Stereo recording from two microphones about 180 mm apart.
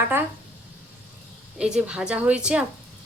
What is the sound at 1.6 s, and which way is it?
Speech, 5° right (ahead or behind).